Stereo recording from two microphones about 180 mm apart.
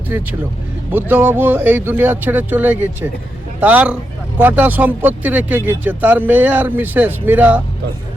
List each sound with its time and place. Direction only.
0.9 s speech: 10° right (ahead or behind)